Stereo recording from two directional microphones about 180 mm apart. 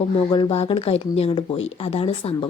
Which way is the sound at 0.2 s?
25° left (ahead or behind).